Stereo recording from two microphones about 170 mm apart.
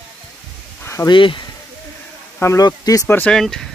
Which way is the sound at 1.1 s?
30° left (ahead or behind).